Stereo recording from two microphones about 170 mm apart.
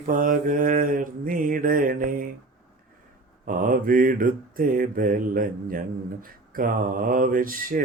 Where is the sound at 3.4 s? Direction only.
55° right (ahead or behind).